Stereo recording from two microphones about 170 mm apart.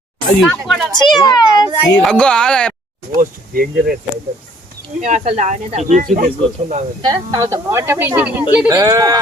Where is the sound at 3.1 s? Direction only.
60° right (ahead or behind).